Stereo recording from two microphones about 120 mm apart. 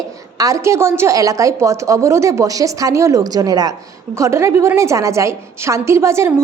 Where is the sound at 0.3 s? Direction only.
25° right (ahead or behind).